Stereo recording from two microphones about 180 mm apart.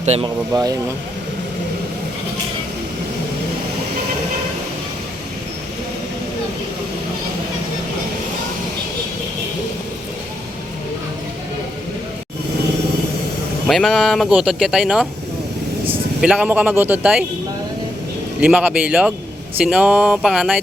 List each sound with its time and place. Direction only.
0.0 s speech: 35° right (ahead or behind)
0.5 s speech: 20° right (ahead or behind)
13.7 s speech: centre (ahead or behind)
18.3 s speech: 5° right (ahead or behind)